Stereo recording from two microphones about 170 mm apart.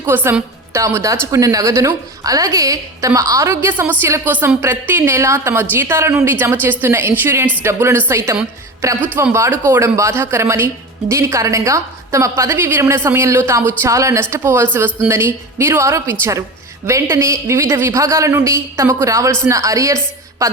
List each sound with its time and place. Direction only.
0.0 s a woman's voice: 10° right (ahead or behind)